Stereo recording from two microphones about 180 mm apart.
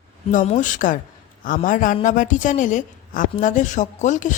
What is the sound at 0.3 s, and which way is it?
A woman's voice, 45° left (ahead or behind).